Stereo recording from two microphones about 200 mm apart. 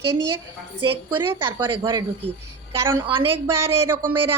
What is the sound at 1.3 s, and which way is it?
A woman's voice, 15° right (ahead or behind).